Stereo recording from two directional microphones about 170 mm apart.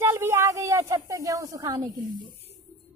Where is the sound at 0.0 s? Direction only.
15° right (ahead or behind).